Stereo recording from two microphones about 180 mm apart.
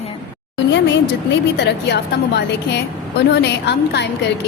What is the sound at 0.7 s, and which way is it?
A woman's voice, 80° left.